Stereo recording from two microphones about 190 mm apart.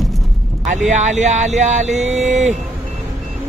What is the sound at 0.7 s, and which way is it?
Speech, 40° right (ahead or behind).